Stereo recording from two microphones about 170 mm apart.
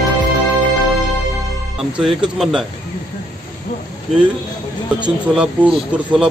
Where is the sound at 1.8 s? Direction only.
5° right (ahead or behind).